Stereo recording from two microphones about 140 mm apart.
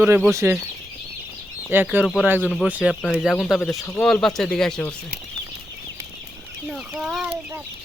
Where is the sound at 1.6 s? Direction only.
15° right (ahead or behind); by 4.9 s 5° left (ahead or behind).